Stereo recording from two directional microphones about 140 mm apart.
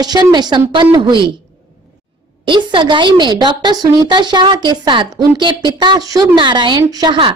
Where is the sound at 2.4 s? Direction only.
35° right (ahead or behind).